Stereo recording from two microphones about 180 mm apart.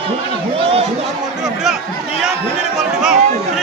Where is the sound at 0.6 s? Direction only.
35° right (ahead or behind).